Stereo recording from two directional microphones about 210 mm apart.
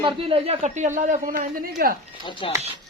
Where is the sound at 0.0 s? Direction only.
25° right (ahead or behind).